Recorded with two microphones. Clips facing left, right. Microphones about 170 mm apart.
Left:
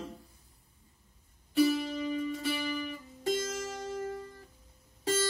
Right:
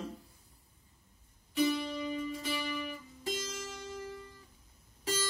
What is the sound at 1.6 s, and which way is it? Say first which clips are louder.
Music: left 3 dB; 40° left (ahead or behind).